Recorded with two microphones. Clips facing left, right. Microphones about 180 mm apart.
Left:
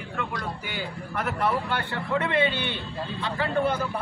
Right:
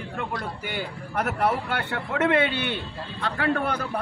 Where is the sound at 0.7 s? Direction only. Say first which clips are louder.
Right 2 dB; 50° right (ahead or behind).